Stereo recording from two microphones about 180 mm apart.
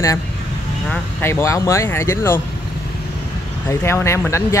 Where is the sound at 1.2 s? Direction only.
15° left (ahead or behind).